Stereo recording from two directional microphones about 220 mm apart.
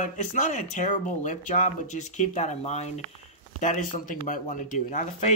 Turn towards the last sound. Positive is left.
turn(degrees=35)  # may be behind; listen again after turning